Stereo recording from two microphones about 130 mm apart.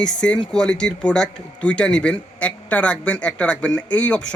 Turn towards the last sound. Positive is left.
turn(degrees=10)  # may be behind; listen again after turning